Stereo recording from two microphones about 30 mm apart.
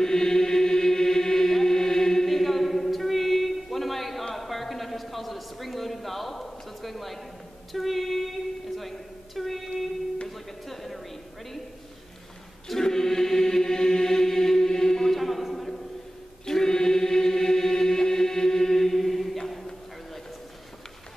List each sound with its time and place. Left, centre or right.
0.0 s chant: centre
7.7 s a sound: centre
12.6 s chant: centre
16.4 s chant: centre